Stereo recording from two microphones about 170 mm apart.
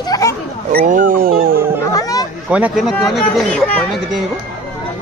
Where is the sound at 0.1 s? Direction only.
20° left (ahead or behind).